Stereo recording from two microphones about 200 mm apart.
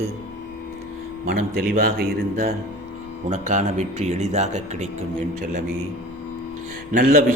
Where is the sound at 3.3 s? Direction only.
35° right (ahead or behind).